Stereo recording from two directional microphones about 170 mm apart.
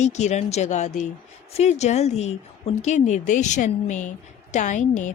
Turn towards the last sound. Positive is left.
turn(degrees=45)  # may be behind; listen again after turning